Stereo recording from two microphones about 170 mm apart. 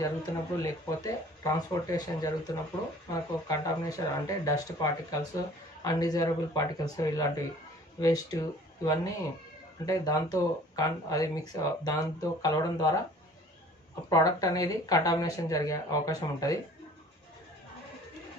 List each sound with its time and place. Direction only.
0.6 s speech: 20° left (ahead or behind)
14.0 s speech: 20° left (ahead or behind)